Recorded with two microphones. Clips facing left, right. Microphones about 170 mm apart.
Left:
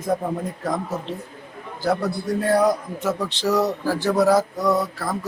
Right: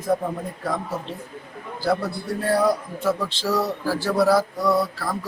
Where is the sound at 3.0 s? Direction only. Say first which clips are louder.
Left 1 dB; 20° left (ahead or behind).